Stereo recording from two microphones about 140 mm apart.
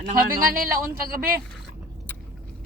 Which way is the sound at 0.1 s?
90° right.